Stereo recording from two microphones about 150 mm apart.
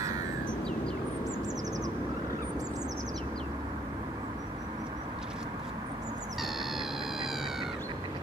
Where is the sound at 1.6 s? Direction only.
25° right (ahead or behind).